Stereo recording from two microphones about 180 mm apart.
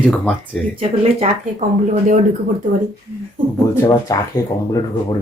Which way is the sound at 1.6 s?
45° right (ahead or behind).